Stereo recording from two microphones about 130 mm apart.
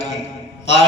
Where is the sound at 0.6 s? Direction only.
55° left (ahead or behind).